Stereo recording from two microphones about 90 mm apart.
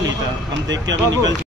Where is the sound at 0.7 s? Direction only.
45° right (ahead or behind).